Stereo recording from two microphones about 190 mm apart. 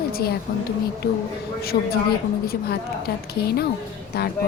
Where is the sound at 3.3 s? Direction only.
55° left (ahead or behind).